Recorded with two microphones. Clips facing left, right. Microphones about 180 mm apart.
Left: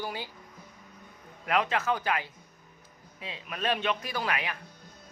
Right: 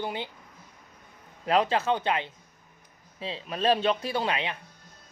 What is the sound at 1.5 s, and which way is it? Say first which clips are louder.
A man's voice: right 4 dB; 30° right (ahead or behind).